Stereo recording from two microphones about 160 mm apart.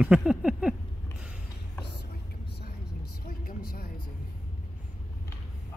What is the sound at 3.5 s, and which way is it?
Music, 65° left (ahead or behind).